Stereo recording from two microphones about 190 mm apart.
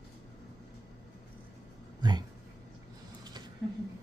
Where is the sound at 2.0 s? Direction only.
20° right (ahead or behind).